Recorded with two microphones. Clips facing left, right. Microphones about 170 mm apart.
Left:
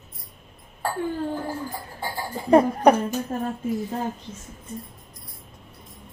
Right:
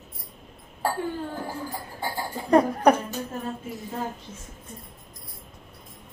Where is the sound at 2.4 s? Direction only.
Centre (ahead or behind).